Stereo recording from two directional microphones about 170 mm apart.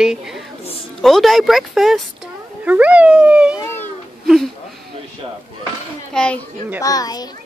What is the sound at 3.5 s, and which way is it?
Cat, 15° left (ahead or behind).